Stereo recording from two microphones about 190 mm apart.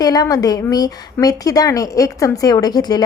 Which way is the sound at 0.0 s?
20° left (ahead or behind).